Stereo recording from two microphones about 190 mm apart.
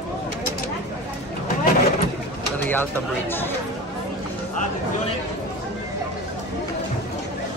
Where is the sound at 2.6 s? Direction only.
10° left (ahead or behind).